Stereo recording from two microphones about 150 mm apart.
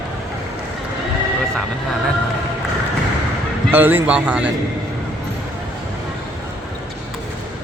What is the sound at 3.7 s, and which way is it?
Speech, 15° right (ahead or behind).